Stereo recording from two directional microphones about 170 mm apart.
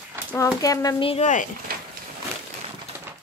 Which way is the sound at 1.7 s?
60° right (ahead or behind).